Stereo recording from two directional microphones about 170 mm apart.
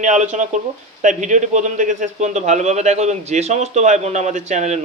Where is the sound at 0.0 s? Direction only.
45° right (ahead or behind).